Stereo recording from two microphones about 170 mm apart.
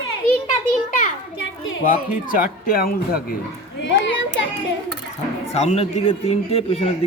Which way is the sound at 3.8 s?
90° left.